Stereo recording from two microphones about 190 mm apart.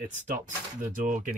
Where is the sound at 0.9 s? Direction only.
40° right (ahead or behind).